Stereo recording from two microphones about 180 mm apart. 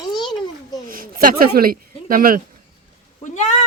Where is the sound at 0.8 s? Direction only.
50° right (ahead or behind).